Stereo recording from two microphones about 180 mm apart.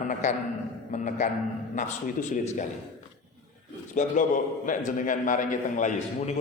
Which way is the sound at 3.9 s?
45° left (ahead or behind).